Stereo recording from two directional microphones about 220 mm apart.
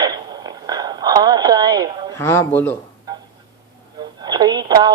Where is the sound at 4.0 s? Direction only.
20° right (ahead or behind).